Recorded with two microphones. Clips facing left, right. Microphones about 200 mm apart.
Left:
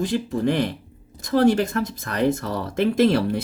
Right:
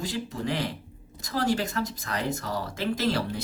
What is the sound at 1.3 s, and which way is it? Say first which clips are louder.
Speech: left 9 dB; 60° left (ahead or behind).